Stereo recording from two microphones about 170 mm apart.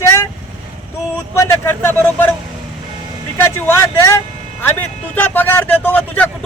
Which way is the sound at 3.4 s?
15° left (ahead or behind).